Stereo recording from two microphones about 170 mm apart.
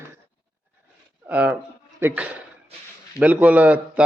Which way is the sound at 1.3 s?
10° right (ahead or behind).